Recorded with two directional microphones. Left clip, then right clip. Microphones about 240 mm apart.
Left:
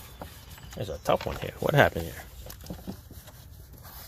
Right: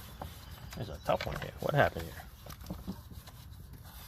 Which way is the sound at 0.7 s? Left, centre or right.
Left.